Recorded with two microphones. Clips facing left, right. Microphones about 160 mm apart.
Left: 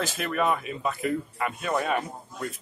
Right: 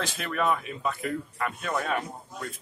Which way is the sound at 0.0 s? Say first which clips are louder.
Left 2 dB; 5° left (ahead or behind).